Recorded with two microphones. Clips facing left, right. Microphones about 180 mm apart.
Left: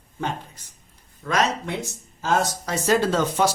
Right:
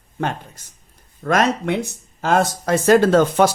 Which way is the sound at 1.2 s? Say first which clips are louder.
Right 5 dB; 55° right (ahead or behind).